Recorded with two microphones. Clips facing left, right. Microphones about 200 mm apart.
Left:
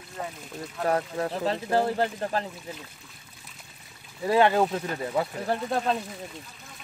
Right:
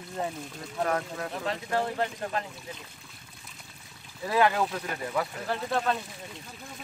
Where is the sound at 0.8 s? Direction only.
30° left (ahead or behind).